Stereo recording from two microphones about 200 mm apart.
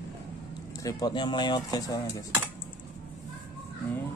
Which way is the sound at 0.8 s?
20° left (ahead or behind).